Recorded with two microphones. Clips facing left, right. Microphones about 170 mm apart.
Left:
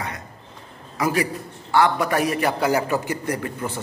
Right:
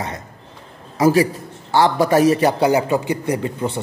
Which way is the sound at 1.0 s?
30° right (ahead or behind).